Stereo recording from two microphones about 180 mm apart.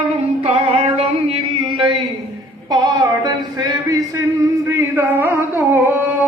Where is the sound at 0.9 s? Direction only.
30° right (ahead or behind); by 5.8 s 10° right (ahead or behind).